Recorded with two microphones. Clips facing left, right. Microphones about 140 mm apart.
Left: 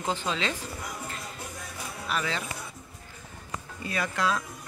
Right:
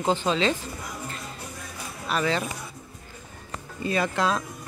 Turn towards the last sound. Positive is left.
turn(degrees=-25)  # may be behind; listen again after turning